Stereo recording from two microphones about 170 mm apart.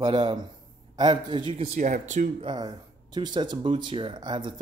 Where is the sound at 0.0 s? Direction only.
30° right (ahead or behind).